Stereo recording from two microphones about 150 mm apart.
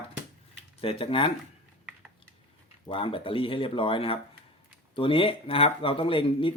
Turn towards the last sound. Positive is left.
turn(degrees=35)  # may be behind; listen again after turning